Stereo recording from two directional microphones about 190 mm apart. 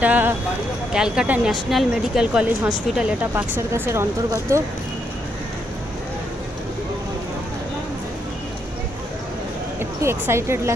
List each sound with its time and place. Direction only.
0.0 s speech: 10° right (ahead or behind)
9.8 s a woman's voice: 15° right (ahead or behind)